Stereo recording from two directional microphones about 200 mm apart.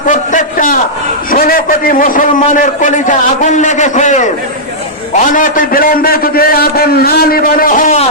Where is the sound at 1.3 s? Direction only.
45° left (ahead or behind).